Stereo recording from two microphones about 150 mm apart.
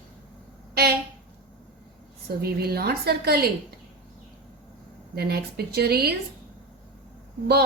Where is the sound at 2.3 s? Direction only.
90° right.